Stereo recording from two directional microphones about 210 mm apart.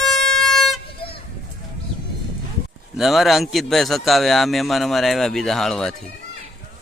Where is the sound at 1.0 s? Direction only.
25° left (ahead or behind).